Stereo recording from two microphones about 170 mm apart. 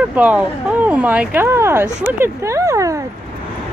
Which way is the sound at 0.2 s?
5° right (ahead or behind).